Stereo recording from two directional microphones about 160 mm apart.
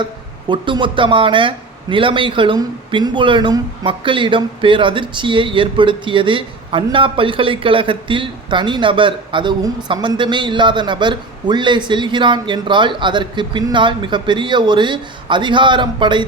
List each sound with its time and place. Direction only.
0.0 s speech: 30° right (ahead or behind)